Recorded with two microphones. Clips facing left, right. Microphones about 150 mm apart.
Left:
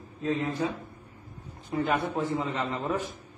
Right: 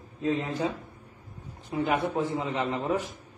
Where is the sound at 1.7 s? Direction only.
10° right (ahead or behind).